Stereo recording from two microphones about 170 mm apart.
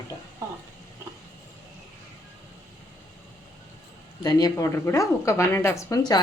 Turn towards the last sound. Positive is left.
turn(degrees=15)  # may be behind; listen again after turning